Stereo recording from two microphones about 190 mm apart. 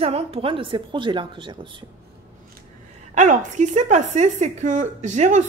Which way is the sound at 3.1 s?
40° right (ahead or behind).